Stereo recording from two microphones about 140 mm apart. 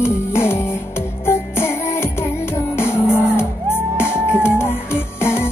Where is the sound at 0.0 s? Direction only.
15° left (ahead or behind).